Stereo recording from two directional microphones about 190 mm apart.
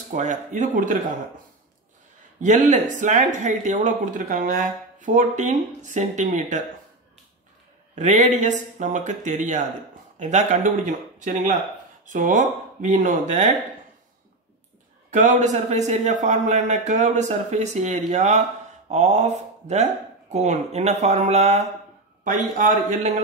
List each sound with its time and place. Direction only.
0.1 s speech: 40° right (ahead or behind)
2.4 s speech: 40° right (ahead or behind)
7.9 s speech: 40° right (ahead or behind)
15.1 s a man's voice: 40° right (ahead or behind)